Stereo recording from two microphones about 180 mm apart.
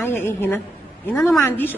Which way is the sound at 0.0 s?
15° left (ahead or behind).